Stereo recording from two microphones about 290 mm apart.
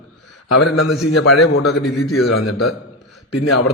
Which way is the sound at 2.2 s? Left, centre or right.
Left.